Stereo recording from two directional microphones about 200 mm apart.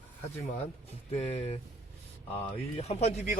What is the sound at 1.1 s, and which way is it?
Speech, 30° left (ahead or behind).